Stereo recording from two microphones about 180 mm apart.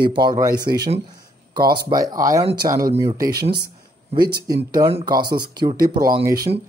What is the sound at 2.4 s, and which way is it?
Speech, 30° right (ahead or behind).